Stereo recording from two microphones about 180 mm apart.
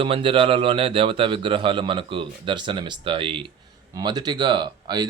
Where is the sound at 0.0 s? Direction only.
30° right (ahead or behind).